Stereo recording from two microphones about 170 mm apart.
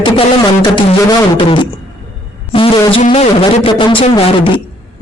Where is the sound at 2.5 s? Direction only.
30° left (ahead or behind).